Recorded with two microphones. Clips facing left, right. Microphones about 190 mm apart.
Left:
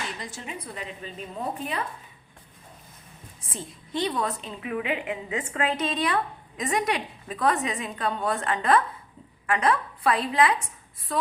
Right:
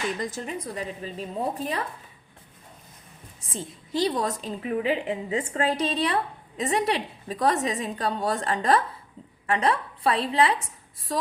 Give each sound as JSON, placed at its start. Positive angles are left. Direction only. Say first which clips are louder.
{"t": 0.3, "sound": "a woman's voice", "louder": "right 5 dB", "side_deg": -40}
{"t": 3.9, "sound": "a woman's voice", "louder": "right 2 dB", "side_deg": -35}